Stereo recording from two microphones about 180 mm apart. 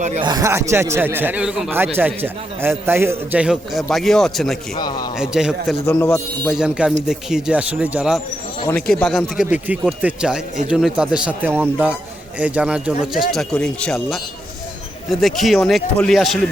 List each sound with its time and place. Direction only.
0.2 s a man's voice: 20° right (ahead or behind); by 4.5 s centre (ahead or behind)
4.8 s a man's voice: 25° left (ahead or behind)
5.1 s speech: 5° right (ahead or behind)
6.0 s a man's voice: 15° left (ahead or behind)
6.5 s speech: 5° right (ahead or behind)